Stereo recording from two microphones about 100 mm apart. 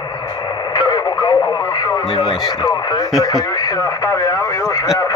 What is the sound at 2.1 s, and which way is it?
Speech, 60° left (ahead or behind).